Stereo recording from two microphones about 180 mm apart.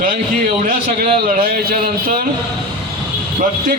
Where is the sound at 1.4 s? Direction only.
55° right (ahead or behind).